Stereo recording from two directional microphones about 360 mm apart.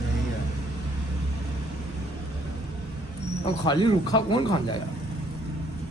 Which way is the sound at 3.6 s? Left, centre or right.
Centre.